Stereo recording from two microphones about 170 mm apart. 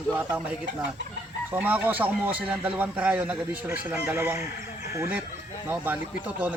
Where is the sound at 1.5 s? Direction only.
10° right (ahead or behind).